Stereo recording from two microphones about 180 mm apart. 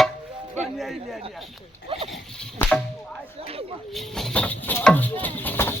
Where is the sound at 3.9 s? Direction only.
Centre (ahead or behind).